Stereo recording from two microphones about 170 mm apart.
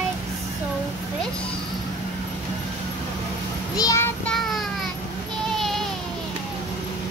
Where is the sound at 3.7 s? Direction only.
20° left (ahead or behind).